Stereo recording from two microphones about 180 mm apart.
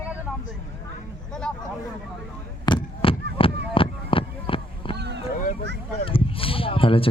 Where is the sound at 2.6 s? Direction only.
30° left (ahead or behind).